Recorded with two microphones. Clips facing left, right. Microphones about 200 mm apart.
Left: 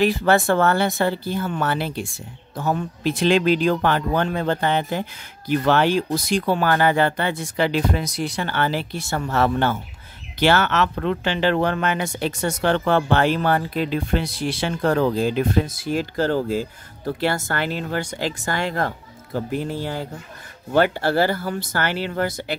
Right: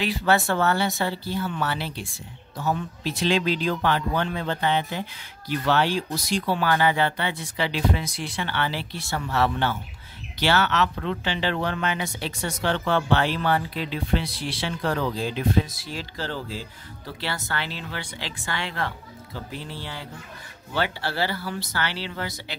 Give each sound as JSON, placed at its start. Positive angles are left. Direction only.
{"t": 0.0, "sound": "speech", "side_deg": 50}